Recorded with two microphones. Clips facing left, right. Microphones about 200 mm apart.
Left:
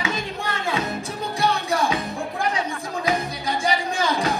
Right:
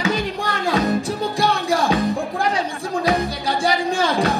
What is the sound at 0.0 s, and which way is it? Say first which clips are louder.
Music: right 5 dB; 35° right (ahead or behind).